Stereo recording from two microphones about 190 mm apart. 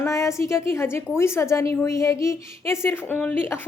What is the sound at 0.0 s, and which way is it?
A woman's voice, 15° left (ahead or behind).